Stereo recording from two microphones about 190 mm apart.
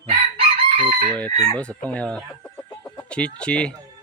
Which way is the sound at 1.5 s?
5° left (ahead or behind).